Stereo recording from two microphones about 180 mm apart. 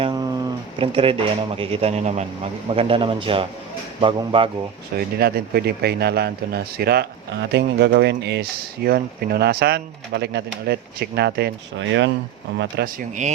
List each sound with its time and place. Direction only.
0.0 s a sound: 20° right (ahead or behind)
0.8 s speech: 30° right (ahead or behind)
4.9 s speech: 60° right (ahead or behind); by 12.1 s 85° right
12.5 s speech: 70° right (ahead or behind)